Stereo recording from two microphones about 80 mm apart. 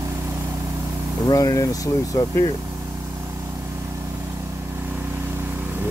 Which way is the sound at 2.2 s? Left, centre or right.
Left.